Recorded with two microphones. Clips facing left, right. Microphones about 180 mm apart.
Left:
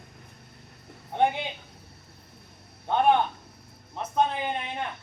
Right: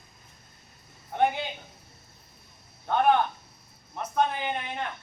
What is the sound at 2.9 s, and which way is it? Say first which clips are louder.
A man's voice: left 1 dB; 20° left (ahead or behind).